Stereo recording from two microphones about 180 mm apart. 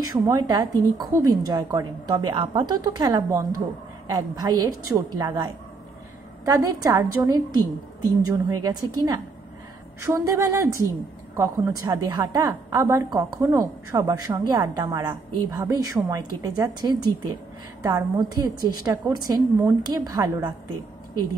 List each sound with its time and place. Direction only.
0.3 s a woman's voice: 20° right (ahead or behind)